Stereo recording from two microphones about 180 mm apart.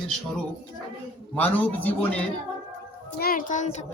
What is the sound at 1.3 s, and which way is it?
Speech, 10° left (ahead or behind).